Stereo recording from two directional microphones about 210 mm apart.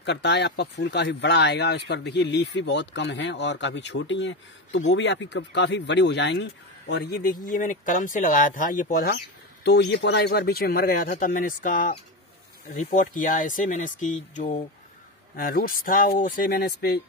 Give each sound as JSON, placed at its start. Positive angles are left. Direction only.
{"t": 0.0, "sound": "speech", "side_deg": 55}
{"t": 7.4, "sound": "speech", "side_deg": 40}